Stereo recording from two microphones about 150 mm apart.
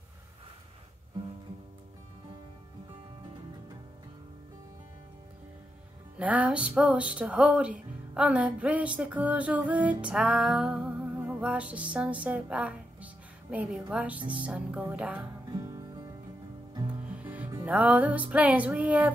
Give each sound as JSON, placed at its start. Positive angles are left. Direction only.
{"t": 6.1, "sound": "music", "side_deg": -10}
{"t": 15.5, "sound": "music", "side_deg": -20}
{"t": 17.1, "sound": "music", "side_deg": -10}